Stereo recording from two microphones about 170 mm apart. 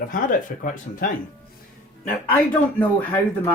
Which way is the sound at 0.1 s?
50° left (ahead or behind).